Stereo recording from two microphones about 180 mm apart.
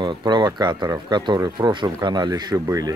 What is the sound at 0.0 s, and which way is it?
Speech, 25° right (ahead or behind).